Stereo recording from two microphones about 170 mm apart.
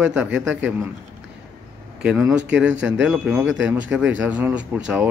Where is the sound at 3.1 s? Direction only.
5° right (ahead or behind).